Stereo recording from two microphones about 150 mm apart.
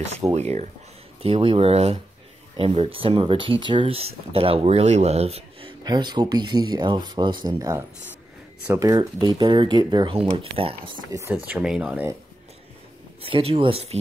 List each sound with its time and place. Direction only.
0.3 s speech: 45° right (ahead or behind)
11.1 s speech: 20° right (ahead or behind)
11.4 s speech: 5° right (ahead or behind)
13.2 s speech: 40° right (ahead or behind)